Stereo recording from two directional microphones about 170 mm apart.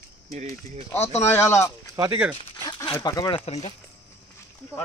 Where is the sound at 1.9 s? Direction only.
20° right (ahead or behind).